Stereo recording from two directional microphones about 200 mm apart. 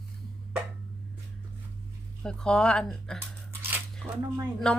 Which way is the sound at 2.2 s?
5° left (ahead or behind).